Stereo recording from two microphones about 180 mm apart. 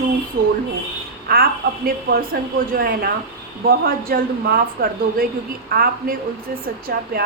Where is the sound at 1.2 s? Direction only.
55° right (ahead or behind).